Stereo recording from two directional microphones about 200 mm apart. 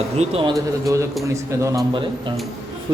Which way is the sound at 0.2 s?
30° right (ahead or behind).